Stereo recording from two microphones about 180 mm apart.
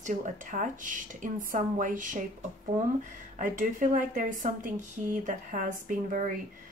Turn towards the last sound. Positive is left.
turn(degrees=-45)  # may be behind; listen again after turning